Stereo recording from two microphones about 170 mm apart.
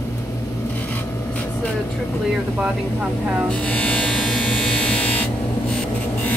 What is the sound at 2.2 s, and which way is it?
Electric shaver, 5° right (ahead or behind).